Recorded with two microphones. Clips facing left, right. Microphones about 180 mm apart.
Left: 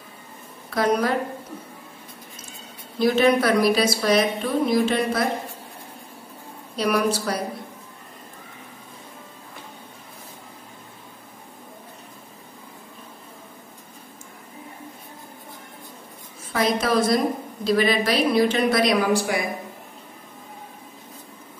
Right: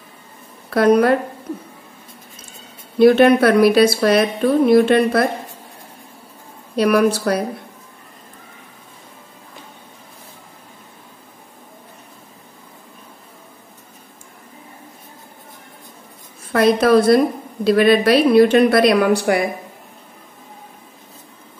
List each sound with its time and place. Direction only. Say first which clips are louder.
0.7 s a woman's voice: right 8 dB; 60° right (ahead or behind)
3.0 s a woman's voice: right 8 dB; 60° right (ahead or behind)
6.8 s a woman's voice: right 7 dB; 60° right (ahead or behind)
16.5 s a woman's voice: right 8 dB; 60° right (ahead or behind)